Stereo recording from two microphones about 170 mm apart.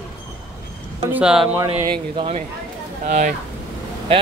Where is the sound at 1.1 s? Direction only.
5° right (ahead or behind).